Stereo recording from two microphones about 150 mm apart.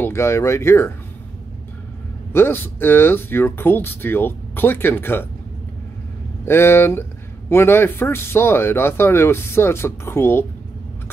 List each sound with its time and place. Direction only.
0.0 s speech: 20° left (ahead or behind)
2.3 s speech: 15° left (ahead or behind)
6.4 s speech: 15° left (ahead or behind)